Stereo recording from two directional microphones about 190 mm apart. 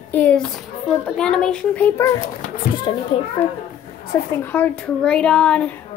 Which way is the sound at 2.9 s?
25° left (ahead or behind).